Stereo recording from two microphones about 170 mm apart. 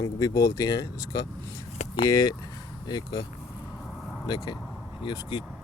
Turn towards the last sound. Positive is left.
turn(degrees=25)  # may be behind; listen again after turning